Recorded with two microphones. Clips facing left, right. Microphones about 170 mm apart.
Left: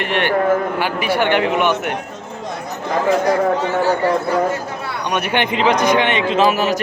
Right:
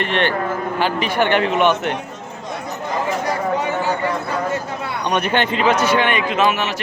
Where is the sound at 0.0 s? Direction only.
10° left (ahead or behind).